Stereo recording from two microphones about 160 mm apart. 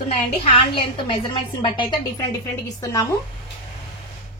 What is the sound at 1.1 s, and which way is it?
A woman's voice, 30° left (ahead or behind).